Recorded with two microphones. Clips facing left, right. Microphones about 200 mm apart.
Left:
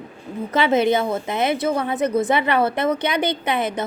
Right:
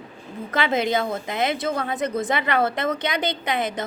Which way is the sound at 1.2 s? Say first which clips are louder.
Left 3 dB; 20° left (ahead or behind).